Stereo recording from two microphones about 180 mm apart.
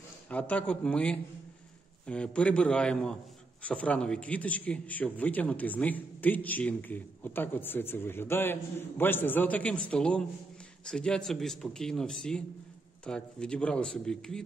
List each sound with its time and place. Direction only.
0.3 s a man's voice: 10° left (ahead or behind)